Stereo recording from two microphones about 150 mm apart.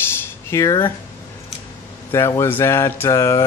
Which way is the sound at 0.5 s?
20° left (ahead or behind).